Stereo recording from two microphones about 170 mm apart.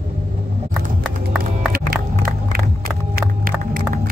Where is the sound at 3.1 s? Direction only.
55° right (ahead or behind).